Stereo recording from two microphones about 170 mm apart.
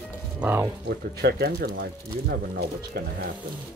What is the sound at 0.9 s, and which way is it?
Speech, 70° right (ahead or behind).